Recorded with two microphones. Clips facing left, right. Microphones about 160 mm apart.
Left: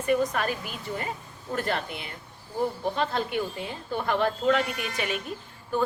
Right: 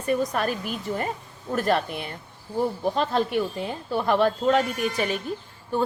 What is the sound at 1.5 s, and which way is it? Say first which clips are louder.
Speech: right 6 dB; 40° right (ahead or behind).